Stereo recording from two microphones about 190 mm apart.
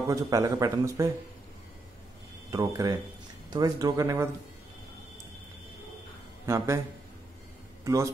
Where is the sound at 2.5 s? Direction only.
15° right (ahead or behind).